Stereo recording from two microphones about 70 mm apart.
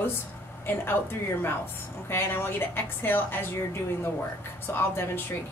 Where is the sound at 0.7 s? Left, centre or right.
Left.